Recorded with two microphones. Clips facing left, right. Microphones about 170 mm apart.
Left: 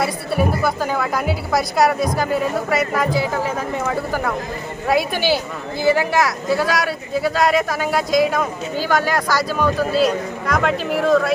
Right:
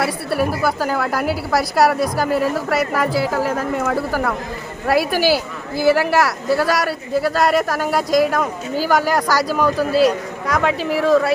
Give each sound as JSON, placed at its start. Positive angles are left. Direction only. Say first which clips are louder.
{"t": 0.0, "sound": "a woman's voice", "louder": "even", "side_deg": -5}